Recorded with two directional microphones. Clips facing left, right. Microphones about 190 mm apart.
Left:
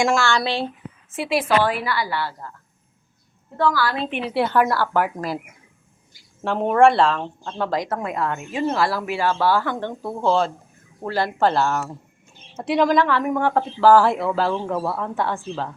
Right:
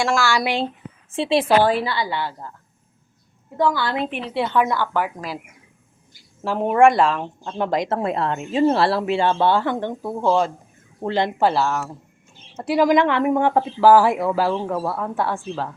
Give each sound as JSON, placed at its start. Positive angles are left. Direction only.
{"t": 0.0, "sound": "speech", "side_deg": 0}
{"t": 0.3, "sound": "speech", "side_deg": -15}
{"t": 1.1, "sound": "a woman's voice", "side_deg": -25}
{"t": 3.6, "sound": "a woman's voice", "side_deg": -25}
{"t": 4.4, "sound": "a woman's voice", "side_deg": 5}
{"t": 6.4, "sound": "a woman's voice", "side_deg": -5}
{"t": 11.4, "sound": "speech", "side_deg": -5}
{"t": 12.9, "sound": "a woman's voice", "side_deg": -20}